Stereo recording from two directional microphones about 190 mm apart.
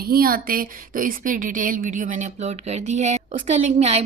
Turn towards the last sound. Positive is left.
turn(degrees=-35)  # may be behind; listen again after turning